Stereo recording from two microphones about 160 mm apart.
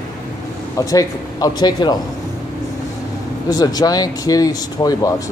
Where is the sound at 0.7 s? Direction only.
20° left (ahead or behind).